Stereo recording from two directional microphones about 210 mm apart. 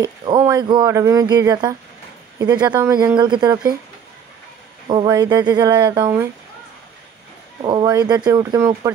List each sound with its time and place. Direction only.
0.0 s speech: 20° right (ahead or behind)
4.8 s speech: 20° right (ahead or behind)
7.6 s speech: 20° right (ahead or behind)